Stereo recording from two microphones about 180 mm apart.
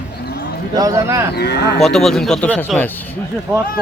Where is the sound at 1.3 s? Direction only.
65° left (ahead or behind).